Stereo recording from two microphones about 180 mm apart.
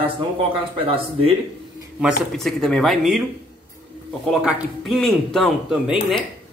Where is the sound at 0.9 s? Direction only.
30° right (ahead or behind).